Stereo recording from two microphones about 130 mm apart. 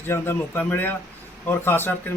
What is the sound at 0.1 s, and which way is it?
A man's voice, 15° left (ahead or behind).